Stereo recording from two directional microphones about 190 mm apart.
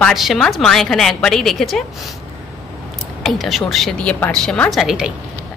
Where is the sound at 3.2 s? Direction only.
Centre (ahead or behind).